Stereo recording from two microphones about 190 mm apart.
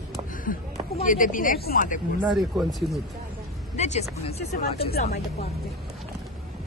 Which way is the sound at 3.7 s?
35° left (ahead or behind).